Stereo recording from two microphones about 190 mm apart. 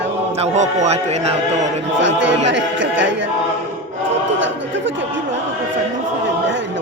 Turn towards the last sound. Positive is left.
turn(degrees=-75)  # may be behind; listen again after turning